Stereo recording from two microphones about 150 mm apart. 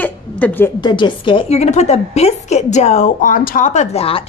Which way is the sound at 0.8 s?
30° left (ahead or behind).